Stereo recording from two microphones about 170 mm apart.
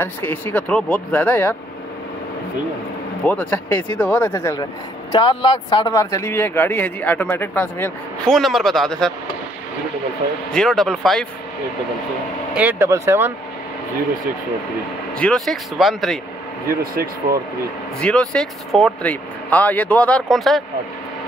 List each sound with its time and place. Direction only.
0.0 s speech: 10° left (ahead or behind)
3.3 s speech: 10° left (ahead or behind)
5.1 s speech: 30° left (ahead or behind)
6.1 s speech: 15° left (ahead or behind)
10.5 s speech: 5° left (ahead or behind)
12.5 s speech: 10° right (ahead or behind)
15.1 s speech: 5° left (ahead or behind)
16.6 s speech: 60° right (ahead or behind)
18.0 s speech: 5° left (ahead or behind)